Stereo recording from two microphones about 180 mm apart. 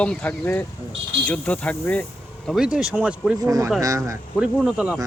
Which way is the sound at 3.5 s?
20° right (ahead or behind).